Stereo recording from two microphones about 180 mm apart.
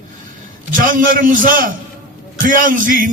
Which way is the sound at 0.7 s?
50° right (ahead or behind).